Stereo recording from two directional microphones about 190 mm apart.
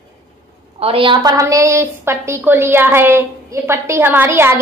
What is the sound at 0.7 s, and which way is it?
A woman's voice, 30° right (ahead or behind).